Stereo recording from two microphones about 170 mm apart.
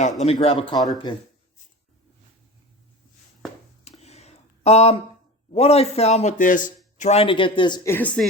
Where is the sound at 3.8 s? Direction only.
40° left (ahead or behind).